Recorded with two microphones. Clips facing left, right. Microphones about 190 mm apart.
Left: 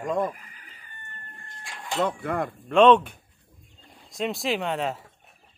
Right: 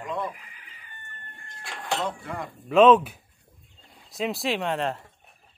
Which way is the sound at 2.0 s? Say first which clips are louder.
Left 6 dB; 55° left (ahead or behind).